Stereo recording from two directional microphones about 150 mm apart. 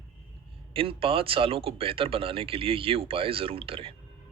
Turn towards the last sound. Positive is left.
turn(degrees=-35)  # may be behind; listen again after turning